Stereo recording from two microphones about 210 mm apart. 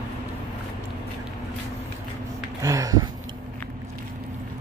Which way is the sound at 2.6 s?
15° right (ahead or behind).